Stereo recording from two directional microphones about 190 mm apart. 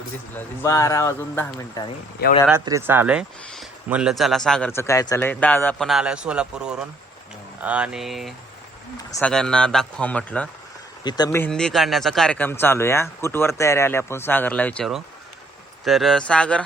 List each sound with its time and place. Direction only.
0.3 s speech: 15° left (ahead or behind)
2.6 s speech: 15° right (ahead or behind); by 5.9 s 10° left (ahead or behind)
5.9 s speech: 5° right (ahead or behind)
11.0 s speech: 15° left (ahead or behind)